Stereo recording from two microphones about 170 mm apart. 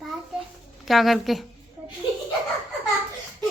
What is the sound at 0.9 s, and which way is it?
Speech, centre (ahead or behind).